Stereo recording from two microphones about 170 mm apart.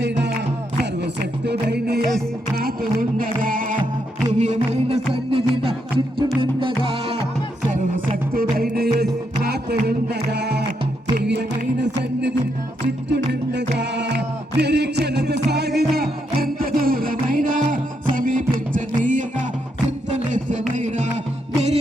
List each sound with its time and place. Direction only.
0.0 s music: 90° right
1.2 s music: 70° right (ahead or behind)
3.0 s music: 55° right (ahead or behind)
4.3 s music: 45° right (ahead or behind)
7.7 s music: 50° right (ahead or behind); by 15.9 s 70° right (ahead or behind)
16.0 s music: 60° right (ahead or behind)